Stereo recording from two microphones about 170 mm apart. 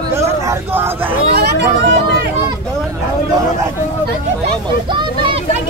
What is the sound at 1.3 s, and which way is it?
Vehicle, 75° right (ahead or behind).